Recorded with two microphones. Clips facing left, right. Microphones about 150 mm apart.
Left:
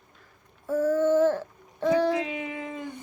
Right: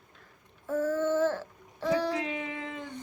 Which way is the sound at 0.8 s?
15° left (ahead or behind).